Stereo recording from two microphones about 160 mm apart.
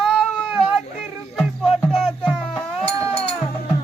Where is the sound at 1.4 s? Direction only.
Centre (ahead or behind).